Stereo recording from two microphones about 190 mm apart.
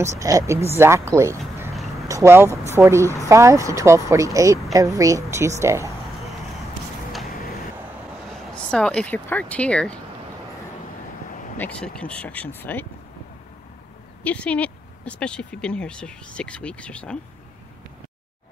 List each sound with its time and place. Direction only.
0.2 s speech: 15° right (ahead or behind)
8.5 s speech: 5° left (ahead or behind)
11.5 s speech: 10° left (ahead or behind)
14.2 s speech: 5° left (ahead or behind)